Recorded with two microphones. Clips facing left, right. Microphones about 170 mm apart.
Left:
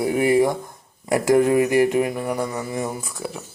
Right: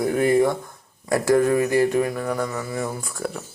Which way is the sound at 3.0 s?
Centre (ahead or behind).